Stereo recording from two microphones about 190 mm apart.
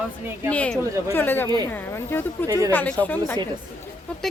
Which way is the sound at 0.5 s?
5° left (ahead or behind).